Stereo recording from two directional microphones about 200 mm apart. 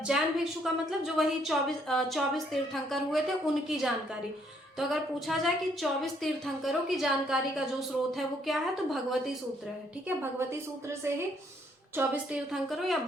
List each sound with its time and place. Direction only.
0.0 s a woman's voice: centre (ahead or behind)
11.9 s a woman's voice: 5° right (ahead or behind)